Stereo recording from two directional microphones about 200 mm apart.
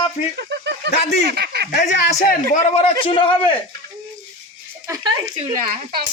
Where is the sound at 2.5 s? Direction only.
30° left (ahead or behind).